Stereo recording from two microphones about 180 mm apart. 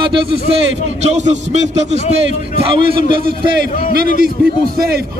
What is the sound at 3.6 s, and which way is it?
Speech, 60° right (ahead or behind).